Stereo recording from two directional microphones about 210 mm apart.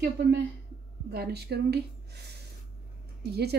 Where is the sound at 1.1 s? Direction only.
50° right (ahead or behind).